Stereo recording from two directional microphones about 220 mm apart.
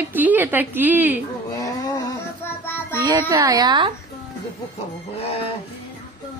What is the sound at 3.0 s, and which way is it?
Speech, 15° right (ahead or behind).